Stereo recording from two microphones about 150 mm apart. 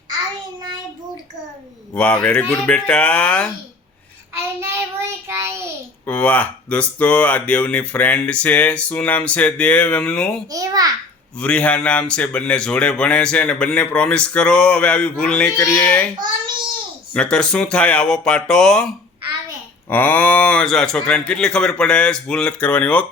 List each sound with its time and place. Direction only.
1.9 s speech: 10° left (ahead or behind)
4.4 s child singing: 15° right (ahead or behind)
6.1 s speech: 10° left (ahead or behind)
10.5 s a child's voice: 25° right (ahead or behind)
11.3 s speech: 10° left (ahead or behind)
17.2 s speech: 5° left (ahead or behind)
19.9 s speech: 10° left (ahead or behind)